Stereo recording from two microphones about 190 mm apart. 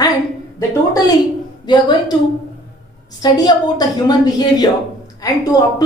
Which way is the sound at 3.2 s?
20° left (ahead or behind).